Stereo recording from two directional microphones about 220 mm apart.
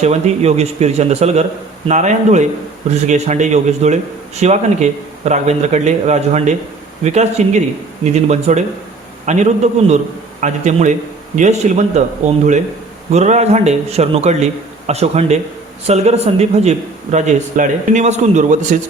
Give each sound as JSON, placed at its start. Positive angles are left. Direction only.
{"t": 0.0, "sound": "a man's voice", "side_deg": -30}